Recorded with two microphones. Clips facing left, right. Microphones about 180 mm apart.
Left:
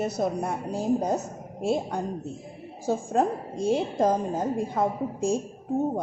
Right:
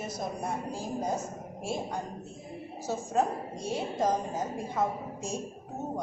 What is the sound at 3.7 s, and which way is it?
A woman's voice, 55° left (ahead or behind).